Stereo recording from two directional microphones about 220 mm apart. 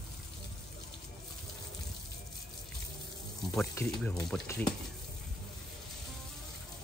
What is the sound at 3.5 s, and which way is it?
Speech, 5° left (ahead or behind).